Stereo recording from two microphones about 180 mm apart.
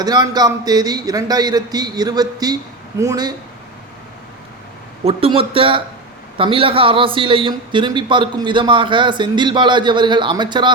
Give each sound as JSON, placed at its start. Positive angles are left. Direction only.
{"t": 0.0, "sound": "a man's voice", "side_deg": -20}
{"t": 5.0, "sound": "a man's voice", "side_deg": -30}